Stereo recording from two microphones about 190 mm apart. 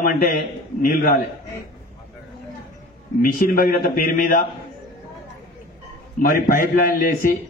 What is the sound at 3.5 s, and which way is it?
Speech, 50° left (ahead or behind).